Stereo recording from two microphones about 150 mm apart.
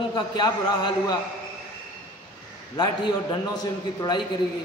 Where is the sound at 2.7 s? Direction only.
30° left (ahead or behind).